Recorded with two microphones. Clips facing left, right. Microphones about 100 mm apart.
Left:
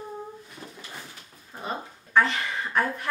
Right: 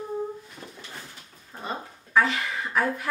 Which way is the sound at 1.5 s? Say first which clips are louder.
Even; centre (ahead or behind).